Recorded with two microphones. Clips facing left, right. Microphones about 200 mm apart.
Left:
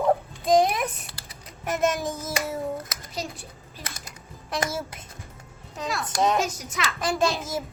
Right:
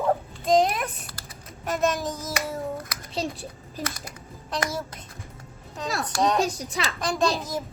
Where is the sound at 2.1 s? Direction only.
25° left (ahead or behind).